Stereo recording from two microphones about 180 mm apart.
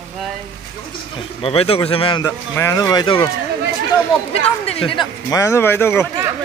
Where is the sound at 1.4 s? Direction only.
30° left (ahead or behind).